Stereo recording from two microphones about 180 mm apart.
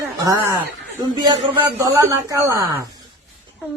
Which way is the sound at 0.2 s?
20° right (ahead or behind).